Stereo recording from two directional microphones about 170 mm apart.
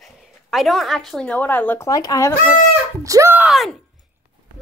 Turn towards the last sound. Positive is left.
turn(degrees=0)  # may be behind; listen again after turning